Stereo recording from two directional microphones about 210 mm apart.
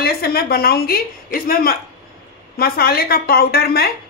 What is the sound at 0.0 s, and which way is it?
A woman's voice, 45° left (ahead or behind).